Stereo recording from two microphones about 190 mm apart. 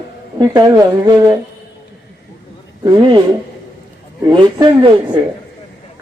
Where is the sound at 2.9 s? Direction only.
25° right (ahead or behind).